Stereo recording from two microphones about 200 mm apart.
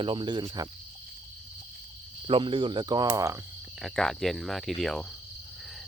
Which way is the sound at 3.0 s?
15° right (ahead or behind).